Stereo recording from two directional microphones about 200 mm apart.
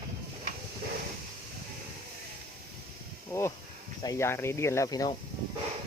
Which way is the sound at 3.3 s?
15° left (ahead or behind).